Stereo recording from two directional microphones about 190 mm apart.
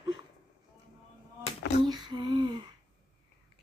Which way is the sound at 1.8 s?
20° right (ahead or behind).